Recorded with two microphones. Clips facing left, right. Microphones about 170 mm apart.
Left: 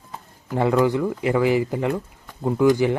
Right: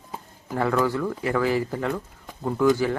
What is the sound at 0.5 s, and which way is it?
Speech, 20° left (ahead or behind).